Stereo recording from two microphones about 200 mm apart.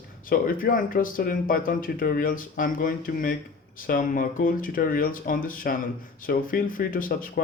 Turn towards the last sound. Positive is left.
turn(degrees=45)  # may be behind; listen again after turning